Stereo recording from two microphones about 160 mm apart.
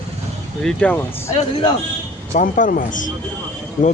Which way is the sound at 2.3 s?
55° left (ahead or behind).